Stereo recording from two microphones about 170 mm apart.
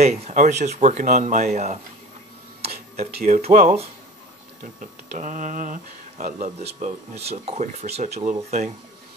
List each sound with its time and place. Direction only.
0.0 s speech: 40° right (ahead or behind)
3.3 s speech: 45° right (ahead or behind)